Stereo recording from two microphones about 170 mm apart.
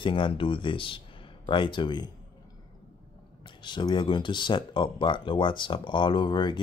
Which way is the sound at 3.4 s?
25° left (ahead or behind).